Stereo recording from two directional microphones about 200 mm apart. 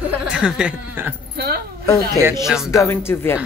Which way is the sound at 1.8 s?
15° left (ahead or behind).